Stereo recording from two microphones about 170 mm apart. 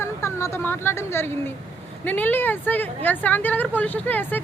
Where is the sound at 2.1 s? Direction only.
10° left (ahead or behind).